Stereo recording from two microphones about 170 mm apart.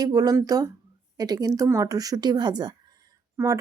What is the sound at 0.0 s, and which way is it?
Speech, 20° right (ahead or behind).